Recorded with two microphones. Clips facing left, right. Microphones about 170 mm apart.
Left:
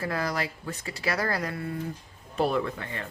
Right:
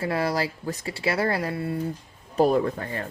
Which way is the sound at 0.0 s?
30° right (ahead or behind).